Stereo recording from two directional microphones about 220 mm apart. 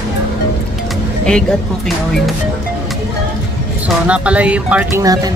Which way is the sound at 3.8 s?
5° right (ahead or behind).